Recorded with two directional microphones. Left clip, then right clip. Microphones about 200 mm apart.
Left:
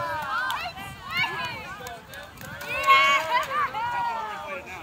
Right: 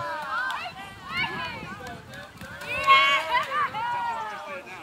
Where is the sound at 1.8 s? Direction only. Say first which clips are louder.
Left 1 dB; 30° left (ahead or behind).